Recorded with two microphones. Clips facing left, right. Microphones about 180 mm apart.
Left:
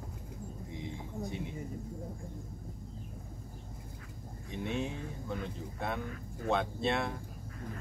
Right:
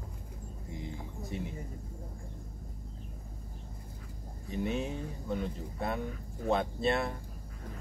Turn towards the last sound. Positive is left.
turn(degrees=0)  # may be behind; listen again after turning